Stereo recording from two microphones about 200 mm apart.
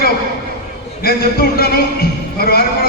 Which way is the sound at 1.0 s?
50° left (ahead or behind).